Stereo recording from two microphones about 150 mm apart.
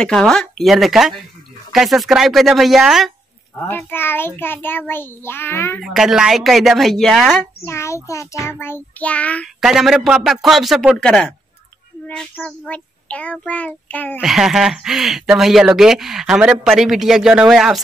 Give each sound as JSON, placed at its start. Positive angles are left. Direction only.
{"t": 0.0, "sound": "speech", "side_deg": 5}
{"t": 3.6, "sound": "child singing", "side_deg": 15}
{"t": 5.8, "sound": "speech", "side_deg": 0}
{"t": 7.6, "sound": "child singing", "side_deg": 20}
{"t": 9.6, "sound": "speech", "side_deg": -5}
{"t": 12.1, "sound": "child singing", "side_deg": 5}
{"t": 14.2, "sound": "speech", "side_deg": -5}